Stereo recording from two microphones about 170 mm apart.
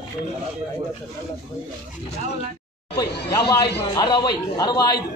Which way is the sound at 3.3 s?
75° left (ahead or behind).